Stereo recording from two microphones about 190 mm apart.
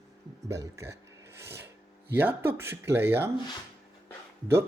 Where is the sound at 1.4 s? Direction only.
15° right (ahead or behind).